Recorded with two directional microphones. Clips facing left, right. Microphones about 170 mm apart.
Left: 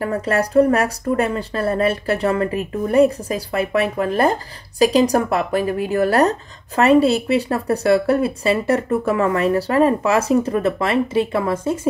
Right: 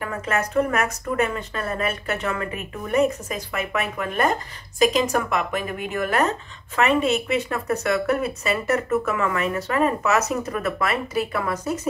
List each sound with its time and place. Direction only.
0.0 s speech: 35° left (ahead or behind)